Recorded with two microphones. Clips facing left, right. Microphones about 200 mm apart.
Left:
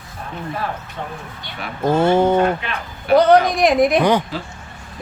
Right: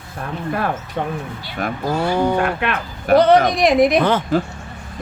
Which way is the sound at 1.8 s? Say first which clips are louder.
Left 5 dB; 25° left (ahead or behind).